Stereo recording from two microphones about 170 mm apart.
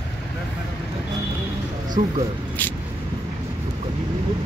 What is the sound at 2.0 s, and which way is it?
Speech, 45° right (ahead or behind).